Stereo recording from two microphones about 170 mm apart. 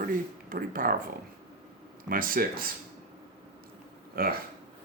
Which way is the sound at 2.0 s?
55° right (ahead or behind).